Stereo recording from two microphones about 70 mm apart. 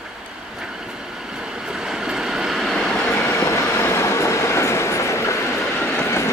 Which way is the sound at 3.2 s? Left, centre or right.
Left.